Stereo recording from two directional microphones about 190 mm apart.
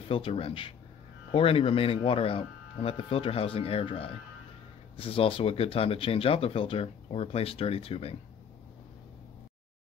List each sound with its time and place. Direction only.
0.1 s speech: 30° left (ahead or behind)